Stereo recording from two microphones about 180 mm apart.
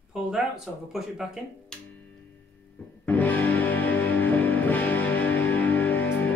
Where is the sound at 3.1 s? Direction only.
10° left (ahead or behind).